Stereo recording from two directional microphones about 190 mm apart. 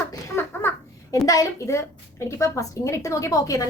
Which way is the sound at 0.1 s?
10° left (ahead or behind).